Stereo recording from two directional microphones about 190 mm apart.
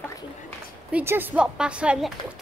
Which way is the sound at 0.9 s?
10° right (ahead or behind).